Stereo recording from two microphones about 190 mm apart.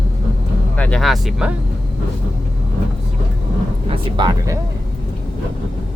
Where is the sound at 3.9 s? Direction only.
25° right (ahead or behind).